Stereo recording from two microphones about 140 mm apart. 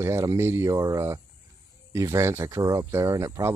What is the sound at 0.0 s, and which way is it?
Speech, 20° right (ahead or behind).